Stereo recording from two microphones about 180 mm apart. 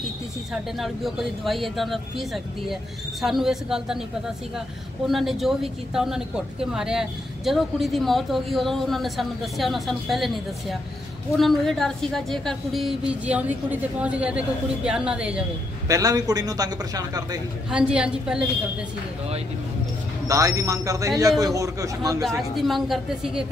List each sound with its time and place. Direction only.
0.5 s speech: centre (ahead or behind)
5.0 s speech: centre (ahead or behind)
15.9 s a man's voice: 20° right (ahead or behind)
17.6 s speech: 5° right (ahead or behind)
20.2 s a man's voice: 20° right (ahead or behind)
22.4 s speech: centre (ahead or behind)